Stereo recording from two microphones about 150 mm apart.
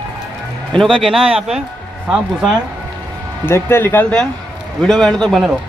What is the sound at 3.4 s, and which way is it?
A man's voice, 15° left (ahead or behind).